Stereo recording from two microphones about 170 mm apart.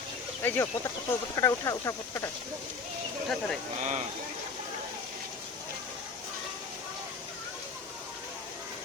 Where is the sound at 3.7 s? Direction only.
45° right (ahead or behind).